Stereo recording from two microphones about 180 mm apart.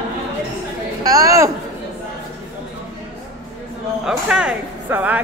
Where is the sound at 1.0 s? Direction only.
20° right (ahead or behind).